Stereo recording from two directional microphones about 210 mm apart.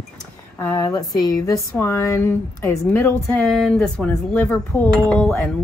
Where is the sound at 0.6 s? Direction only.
20° left (ahead or behind).